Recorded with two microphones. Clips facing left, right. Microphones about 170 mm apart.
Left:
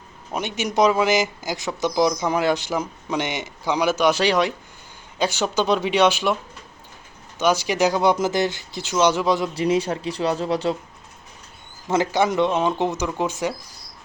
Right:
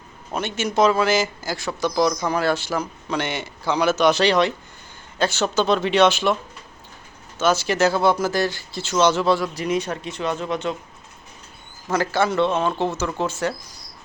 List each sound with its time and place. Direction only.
0.3 s speech: 15° left (ahead or behind)
7.3 s speech: 15° left (ahead or behind)
9.6 s speech: 30° left (ahead or behind)
11.9 s speech: 20° left (ahead or behind)